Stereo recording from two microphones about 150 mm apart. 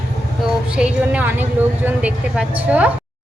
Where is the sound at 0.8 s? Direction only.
10° right (ahead or behind).